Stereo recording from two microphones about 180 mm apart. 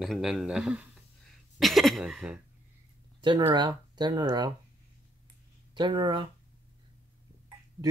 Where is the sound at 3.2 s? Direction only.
25° right (ahead or behind).